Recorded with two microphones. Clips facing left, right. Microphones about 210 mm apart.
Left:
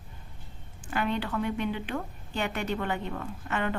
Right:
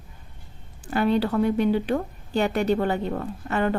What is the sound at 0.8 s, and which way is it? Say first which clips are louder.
A woman's voice: right 8 dB; 35° right (ahead or behind).